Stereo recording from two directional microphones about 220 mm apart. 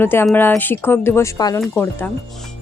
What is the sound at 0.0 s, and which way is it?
Speech, 10° left (ahead or behind).